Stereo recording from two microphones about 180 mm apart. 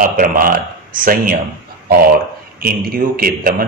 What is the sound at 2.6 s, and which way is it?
Speech, 55° right (ahead or behind).